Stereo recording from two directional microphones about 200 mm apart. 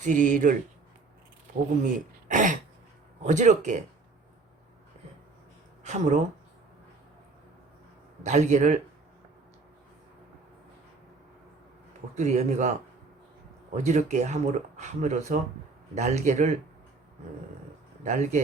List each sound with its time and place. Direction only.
0.0 s speech: 40° right (ahead or behind)
1.8 s speech: 40° right (ahead or behind)
5.8 s speech: 35° right (ahead or behind)
8.2 s speech: 35° right (ahead or behind)
12.1 s speech: 35° right (ahead or behind)
18.0 s speech: 35° right (ahead or behind)